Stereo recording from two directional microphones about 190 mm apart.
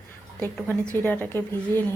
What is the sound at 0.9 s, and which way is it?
Speech, 10° left (ahead or behind).